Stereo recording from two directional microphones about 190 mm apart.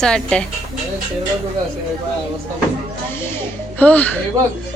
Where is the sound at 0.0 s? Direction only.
5° left (ahead or behind).